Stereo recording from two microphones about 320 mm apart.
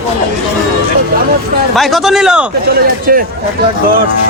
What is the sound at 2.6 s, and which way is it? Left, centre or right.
Speech, right.